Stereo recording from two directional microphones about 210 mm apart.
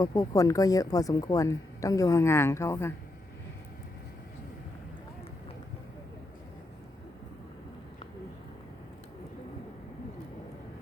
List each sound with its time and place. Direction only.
0.0 s speech: 15° left (ahead or behind)